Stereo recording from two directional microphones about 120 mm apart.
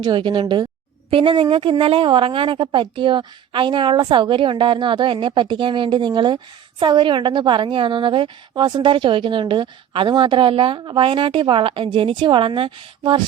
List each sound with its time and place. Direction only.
0.0 s a woman's voice: 40° right (ahead or behind)